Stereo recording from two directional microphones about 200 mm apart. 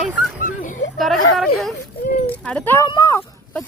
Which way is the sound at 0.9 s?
Centre (ahead or behind).